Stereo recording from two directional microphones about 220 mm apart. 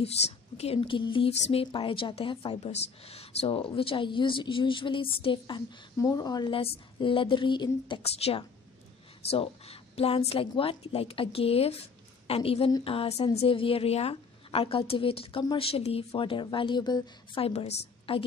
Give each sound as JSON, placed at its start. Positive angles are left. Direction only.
{"t": 0.0, "sound": "a woman's voice", "side_deg": 30}